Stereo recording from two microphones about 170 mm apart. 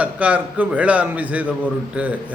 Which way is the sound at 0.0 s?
10° right (ahead or behind).